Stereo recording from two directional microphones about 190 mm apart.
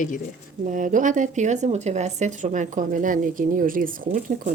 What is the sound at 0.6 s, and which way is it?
Speech, 40° right (ahead or behind).